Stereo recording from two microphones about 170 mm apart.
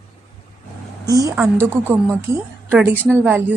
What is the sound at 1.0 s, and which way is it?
A woman's voice, 20° right (ahead or behind).